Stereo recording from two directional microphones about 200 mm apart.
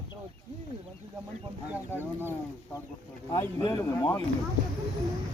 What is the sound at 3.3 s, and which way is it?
Speech, 15° left (ahead or behind).